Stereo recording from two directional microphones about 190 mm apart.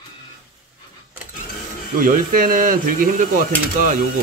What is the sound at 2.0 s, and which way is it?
Speech, 50° right (ahead or behind).